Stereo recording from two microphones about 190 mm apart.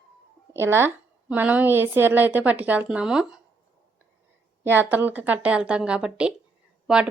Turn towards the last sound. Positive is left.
turn(degrees=-5)  # may be behind; listen again after turning